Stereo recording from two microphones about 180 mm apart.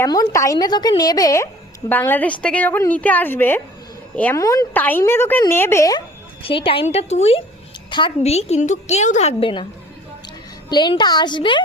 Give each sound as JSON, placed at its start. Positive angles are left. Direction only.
{"t": 0.0, "sound": "a woman's voice", "side_deg": 20}
{"t": 6.4, "sound": "a woman's voice", "side_deg": 30}
{"t": 10.7, "sound": "a woman's voice", "side_deg": 25}